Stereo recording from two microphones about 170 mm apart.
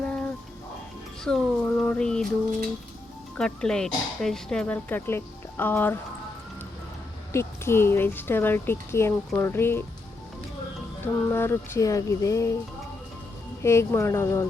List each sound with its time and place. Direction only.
0.0 s music: 5° left (ahead or behind)
1.2 s speech: 5° left (ahead or behind)
3.3 s speech: 5° left (ahead or behind)
7.3 s speech: 15° left (ahead or behind)
11.0 s speech: 15° left (ahead or behind)
13.6 s speech: 15° left (ahead or behind)